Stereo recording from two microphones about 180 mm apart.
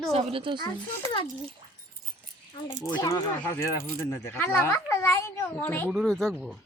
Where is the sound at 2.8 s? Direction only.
20° left (ahead or behind).